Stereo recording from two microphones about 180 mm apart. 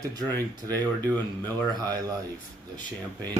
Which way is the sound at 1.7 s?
20° right (ahead or behind).